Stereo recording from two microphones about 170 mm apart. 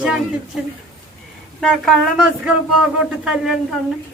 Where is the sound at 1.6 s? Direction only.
Centre (ahead or behind).